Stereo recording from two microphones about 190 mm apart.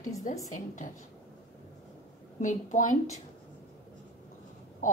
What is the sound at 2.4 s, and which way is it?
Speech, 40° left (ahead or behind).